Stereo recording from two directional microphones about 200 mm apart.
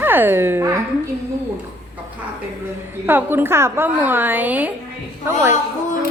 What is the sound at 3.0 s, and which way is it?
A woman's voice, 10° right (ahead or behind).